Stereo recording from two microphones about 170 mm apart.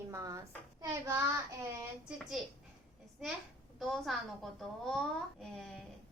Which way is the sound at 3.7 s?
Centre (ahead or behind).